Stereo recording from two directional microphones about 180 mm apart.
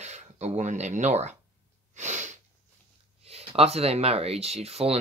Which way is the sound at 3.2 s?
35° right (ahead or behind).